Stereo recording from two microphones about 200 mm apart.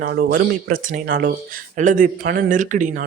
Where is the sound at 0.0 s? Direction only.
45° right (ahead or behind).